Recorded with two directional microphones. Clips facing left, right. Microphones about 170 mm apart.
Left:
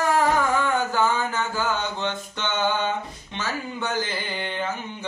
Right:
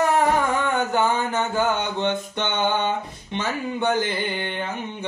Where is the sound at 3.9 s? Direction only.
55° right (ahead or behind).